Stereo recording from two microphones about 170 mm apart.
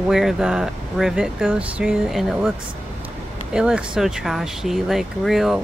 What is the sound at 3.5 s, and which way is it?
Speech, 5° right (ahead or behind).